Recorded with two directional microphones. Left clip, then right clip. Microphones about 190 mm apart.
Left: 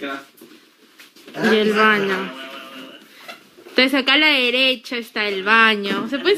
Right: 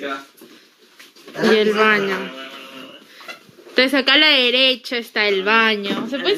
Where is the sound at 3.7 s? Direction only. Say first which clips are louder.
Right 1 dB; 5° left (ahead or behind).